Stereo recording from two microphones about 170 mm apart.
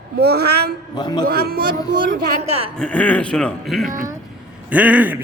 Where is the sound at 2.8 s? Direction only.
5° left (ahead or behind).